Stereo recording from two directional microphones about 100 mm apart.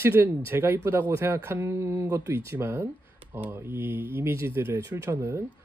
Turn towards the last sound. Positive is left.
turn(degrees=-25)  # may be behind; listen again after turning